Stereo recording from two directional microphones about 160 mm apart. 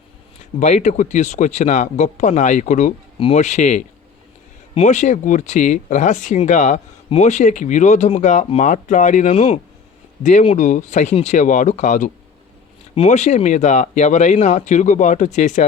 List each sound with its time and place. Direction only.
0.6 s speech: 45° left (ahead or behind)